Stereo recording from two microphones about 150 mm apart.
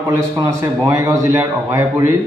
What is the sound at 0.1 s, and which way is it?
A man's voice, 15° right (ahead or behind).